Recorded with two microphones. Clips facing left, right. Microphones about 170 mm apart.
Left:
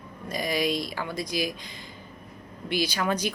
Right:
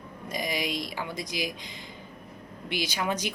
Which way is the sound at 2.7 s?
20° right (ahead or behind).